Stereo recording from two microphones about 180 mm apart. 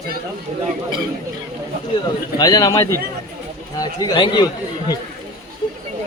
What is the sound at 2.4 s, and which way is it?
Speech, 20° left (ahead or behind).